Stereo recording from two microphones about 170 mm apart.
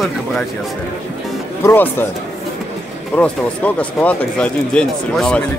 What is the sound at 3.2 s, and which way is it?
Speech, 10° left (ahead or behind).